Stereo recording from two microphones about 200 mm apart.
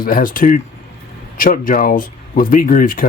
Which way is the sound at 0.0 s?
45° left (ahead or behind).